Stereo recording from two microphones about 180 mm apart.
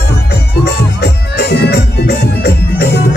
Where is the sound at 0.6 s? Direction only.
65° left (ahead or behind).